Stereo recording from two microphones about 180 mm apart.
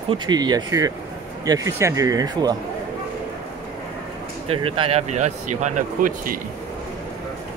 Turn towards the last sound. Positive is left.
turn(degrees=-45)  # may be behind; listen again after turning